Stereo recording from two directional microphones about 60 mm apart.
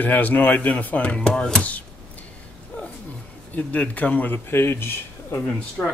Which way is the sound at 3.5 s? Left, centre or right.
Left.